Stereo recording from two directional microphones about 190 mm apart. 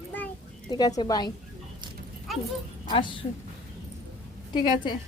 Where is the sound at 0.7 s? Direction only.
20° left (ahead or behind).